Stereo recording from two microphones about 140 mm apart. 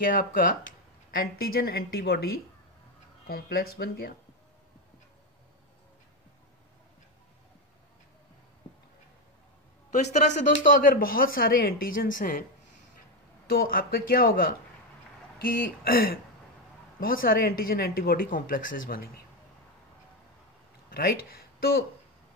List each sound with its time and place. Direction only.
0.0 s speech: 90° left
9.8 s speech: 55° left (ahead or behind); by 12.4 s 90° left
13.5 s speech: 90° left
20.9 s speech: 90° left